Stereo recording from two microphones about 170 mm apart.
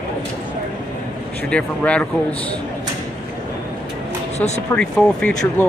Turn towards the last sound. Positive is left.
turn(degrees=5)  # may be behind; listen again after turning